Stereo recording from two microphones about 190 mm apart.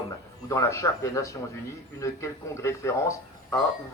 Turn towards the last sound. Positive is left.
turn(degrees=15)  # may be behind; listen again after turning